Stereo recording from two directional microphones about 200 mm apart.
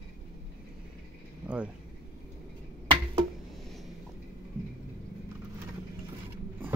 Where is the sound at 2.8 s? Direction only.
25° right (ahead or behind).